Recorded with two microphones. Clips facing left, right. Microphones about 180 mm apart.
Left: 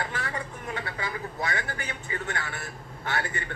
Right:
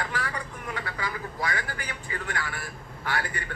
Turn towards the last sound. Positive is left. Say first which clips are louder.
# even
turn(degrees=25)  # may be behind; listen again after turning